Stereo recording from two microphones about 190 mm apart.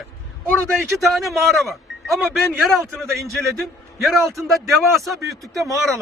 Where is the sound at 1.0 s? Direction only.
Centre (ahead or behind).